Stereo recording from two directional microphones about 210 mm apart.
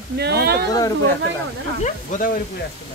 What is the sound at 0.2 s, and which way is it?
Speech, 50° right (ahead or behind).